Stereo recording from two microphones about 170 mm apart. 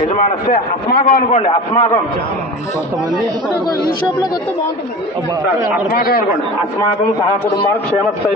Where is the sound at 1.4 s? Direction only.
30° left (ahead or behind).